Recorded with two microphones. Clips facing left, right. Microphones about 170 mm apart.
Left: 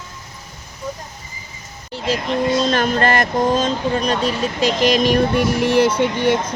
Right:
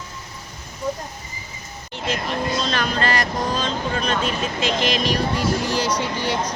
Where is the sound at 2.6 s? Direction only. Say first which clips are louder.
Left 6 dB; 45° left (ahead or behind).